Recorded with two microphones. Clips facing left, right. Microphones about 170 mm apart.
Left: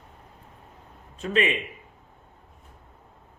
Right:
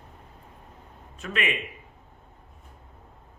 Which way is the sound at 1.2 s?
30° left (ahead or behind).